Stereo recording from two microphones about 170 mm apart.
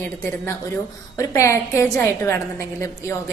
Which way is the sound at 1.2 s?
15° left (ahead or behind).